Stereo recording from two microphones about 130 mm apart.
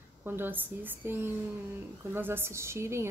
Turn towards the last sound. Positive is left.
turn(degrees=-20)  # may be behind; listen again after turning